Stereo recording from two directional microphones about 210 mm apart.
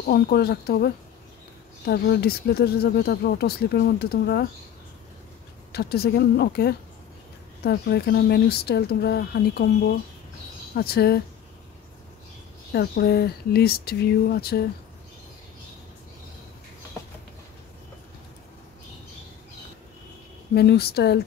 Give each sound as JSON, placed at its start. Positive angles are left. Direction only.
{"t": 0.0, "sound": "speech", "side_deg": 45}
{"t": 5.7, "sound": "speech", "side_deg": 50}
{"t": 12.7, "sound": "speech", "side_deg": 50}
{"t": 20.5, "sound": "speech", "side_deg": 50}